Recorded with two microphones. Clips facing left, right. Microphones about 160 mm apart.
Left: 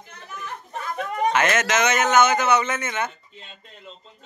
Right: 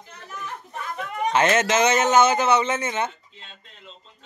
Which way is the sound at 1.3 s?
30° right (ahead or behind).